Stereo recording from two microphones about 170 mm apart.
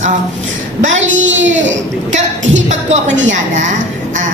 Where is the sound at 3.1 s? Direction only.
90° right.